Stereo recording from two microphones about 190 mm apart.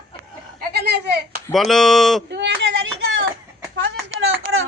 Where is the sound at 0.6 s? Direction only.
55° right (ahead or behind).